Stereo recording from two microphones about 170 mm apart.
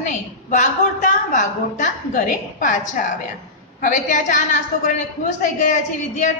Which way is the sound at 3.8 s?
50° left (ahead or behind).